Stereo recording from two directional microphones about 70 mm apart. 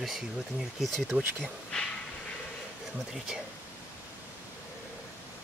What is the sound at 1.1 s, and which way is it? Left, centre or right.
Speech, right.